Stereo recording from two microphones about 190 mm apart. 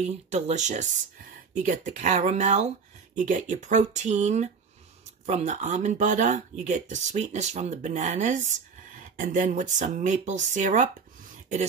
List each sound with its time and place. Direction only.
0.0 s speech: 35° right (ahead or behind)